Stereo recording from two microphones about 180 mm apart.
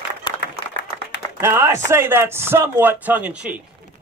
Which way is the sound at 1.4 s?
15° right (ahead or behind).